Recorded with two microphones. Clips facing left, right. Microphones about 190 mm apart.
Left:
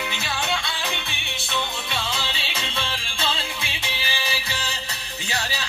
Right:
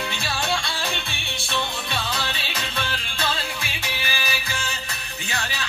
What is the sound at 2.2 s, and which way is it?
Music, 25° left (ahead or behind).